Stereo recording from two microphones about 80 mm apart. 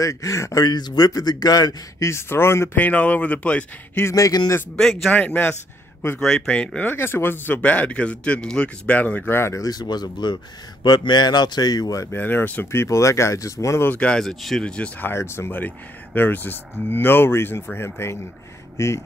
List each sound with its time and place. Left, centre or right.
0.0 s speech: left
0.7 s speech: left
2.0 s speech: left
2.8 s speech: centre
4.1 s a man's voice: left
4.7 s speech: centre
5.2 s speech: centre
6.1 s speech: centre; by 9.6 s left
9.6 s speech: left
12.1 s speech: left
12.8 s speech: left
13.8 s speech: centre
14.2 s speech: centre
15.0 s speech: left